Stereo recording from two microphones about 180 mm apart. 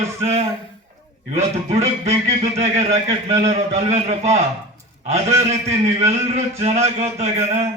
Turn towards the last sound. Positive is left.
turn(degrees=-40)  # may be behind; listen again after turning